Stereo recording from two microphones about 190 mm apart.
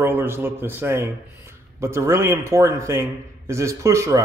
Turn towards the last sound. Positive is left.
turn(degrees=-15)  # may be behind; listen again after turning